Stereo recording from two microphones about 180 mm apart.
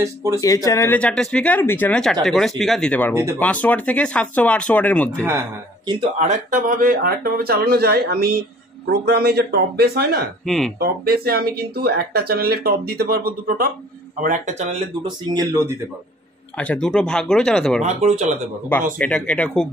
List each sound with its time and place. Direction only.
0.0 s speech: 15° right (ahead or behind)
0.4 s speech: 20° left (ahead or behind)
6.1 s speech: 40° right (ahead or behind); by 10.2 s 60° right (ahead or behind)
10.4 s speech: centre (ahead or behind)
10.8 s speech: 60° right (ahead or behind)
14.2 s speech: 45° right (ahead or behind)
15.0 s speech: 20° right (ahead or behind)
16.5 s speech: 5° left (ahead or behind)
17.8 s speech: 40° right (ahead or behind)
18.9 s speech: 5° left (ahead or behind)